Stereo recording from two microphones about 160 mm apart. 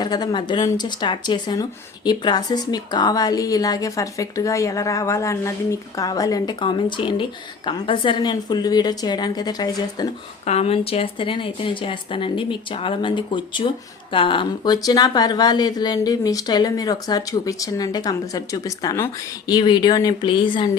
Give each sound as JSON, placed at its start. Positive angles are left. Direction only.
{"t": 0.0, "sound": "a woman's voice", "side_deg": 25}
{"t": 10.4, "sound": "a woman's voice", "side_deg": 40}